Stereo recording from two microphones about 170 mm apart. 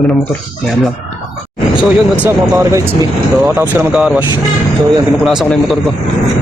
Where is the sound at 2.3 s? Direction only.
20° right (ahead or behind).